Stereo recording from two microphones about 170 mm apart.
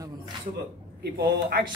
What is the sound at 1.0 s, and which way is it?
Speech, 75° right (ahead or behind).